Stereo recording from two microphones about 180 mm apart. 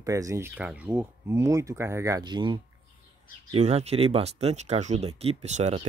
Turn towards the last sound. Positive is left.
turn(degrees=-35)  # may be behind; listen again after turning